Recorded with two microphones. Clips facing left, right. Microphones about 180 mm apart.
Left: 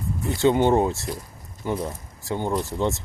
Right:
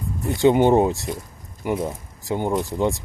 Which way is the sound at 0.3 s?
15° right (ahead or behind).